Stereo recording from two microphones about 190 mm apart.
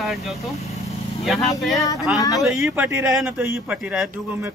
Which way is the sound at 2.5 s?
10° right (ahead or behind).